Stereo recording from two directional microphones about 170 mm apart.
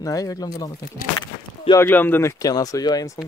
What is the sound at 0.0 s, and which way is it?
Speech, 20° left (ahead or behind).